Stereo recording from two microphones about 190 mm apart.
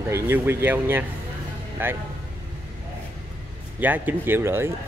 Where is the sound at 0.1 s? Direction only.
10° right (ahead or behind).